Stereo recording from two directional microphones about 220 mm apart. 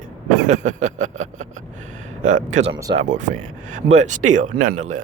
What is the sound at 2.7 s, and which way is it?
Speech, 15° right (ahead or behind).